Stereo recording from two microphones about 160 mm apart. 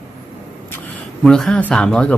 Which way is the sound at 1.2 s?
5° left (ahead or behind).